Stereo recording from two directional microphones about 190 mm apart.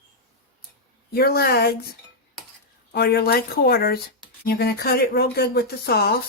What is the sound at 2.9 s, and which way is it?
Speech, 55° left (ahead or behind).